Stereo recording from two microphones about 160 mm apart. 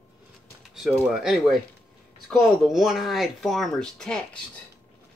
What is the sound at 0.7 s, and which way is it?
Speech, centre (ahead or behind).